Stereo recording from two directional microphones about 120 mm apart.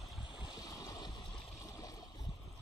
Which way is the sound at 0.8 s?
35° left (ahead or behind).